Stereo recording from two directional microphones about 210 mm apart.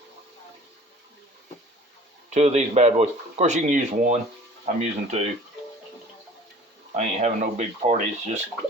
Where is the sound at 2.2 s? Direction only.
30° right (ahead or behind).